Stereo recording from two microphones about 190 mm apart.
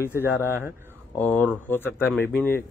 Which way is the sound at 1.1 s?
5° left (ahead or behind).